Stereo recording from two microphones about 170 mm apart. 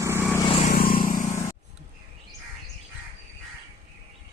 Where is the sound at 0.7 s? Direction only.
60° left (ahead or behind).